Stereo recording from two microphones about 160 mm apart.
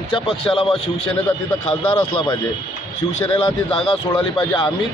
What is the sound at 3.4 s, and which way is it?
Speech, 30° left (ahead or behind).